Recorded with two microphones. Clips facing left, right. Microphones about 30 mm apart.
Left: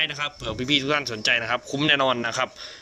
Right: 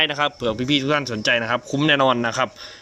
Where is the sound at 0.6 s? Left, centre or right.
Centre.